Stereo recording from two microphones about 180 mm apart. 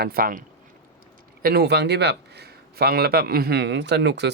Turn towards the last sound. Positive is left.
turn(degrees=-70)  # may be behind; listen again after turning